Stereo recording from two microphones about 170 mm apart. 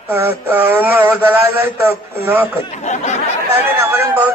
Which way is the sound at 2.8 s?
45° left (ahead or behind).